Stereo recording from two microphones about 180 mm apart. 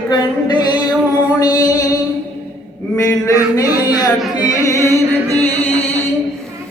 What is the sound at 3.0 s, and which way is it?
Chant, 20° left (ahead or behind).